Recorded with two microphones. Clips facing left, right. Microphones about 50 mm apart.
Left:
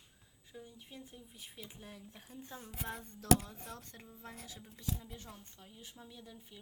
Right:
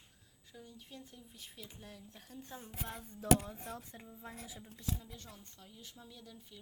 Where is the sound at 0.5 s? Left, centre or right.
Centre.